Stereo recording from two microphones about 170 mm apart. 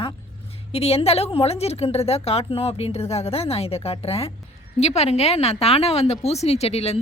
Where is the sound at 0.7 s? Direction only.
35° left (ahead or behind).